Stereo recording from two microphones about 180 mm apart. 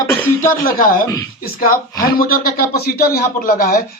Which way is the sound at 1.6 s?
55° left (ahead or behind).